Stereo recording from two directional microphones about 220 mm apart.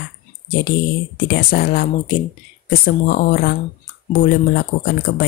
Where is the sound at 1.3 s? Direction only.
40° left (ahead or behind).